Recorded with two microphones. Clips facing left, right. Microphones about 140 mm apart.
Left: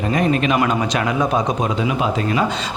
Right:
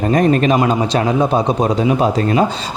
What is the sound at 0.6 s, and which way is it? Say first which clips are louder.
Speech: right 4 dB; 30° right (ahead or behind).